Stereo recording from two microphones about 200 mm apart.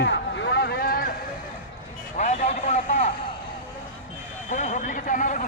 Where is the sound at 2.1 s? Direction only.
35° left (ahead or behind).